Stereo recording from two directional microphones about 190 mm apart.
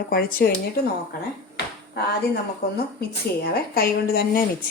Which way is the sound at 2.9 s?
55° left (ahead or behind).